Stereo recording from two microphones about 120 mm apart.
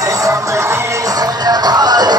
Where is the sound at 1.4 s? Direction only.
35° right (ahead or behind).